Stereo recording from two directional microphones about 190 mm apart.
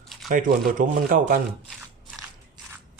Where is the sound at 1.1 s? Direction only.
45° right (ahead or behind).